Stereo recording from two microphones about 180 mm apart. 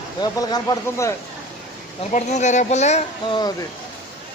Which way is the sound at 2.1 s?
40° left (ahead or behind).